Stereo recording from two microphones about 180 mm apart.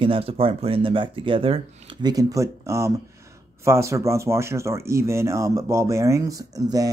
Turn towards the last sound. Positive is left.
turn(degrees=-20)  # may be behind; listen again after turning